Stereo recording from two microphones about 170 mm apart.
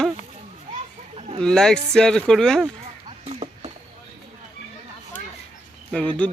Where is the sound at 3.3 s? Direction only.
35° right (ahead or behind).